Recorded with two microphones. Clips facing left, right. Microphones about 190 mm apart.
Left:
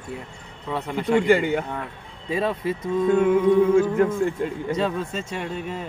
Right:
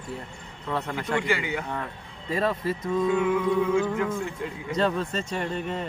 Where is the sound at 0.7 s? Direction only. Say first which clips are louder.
Left 6 dB; 10° left (ahead or behind).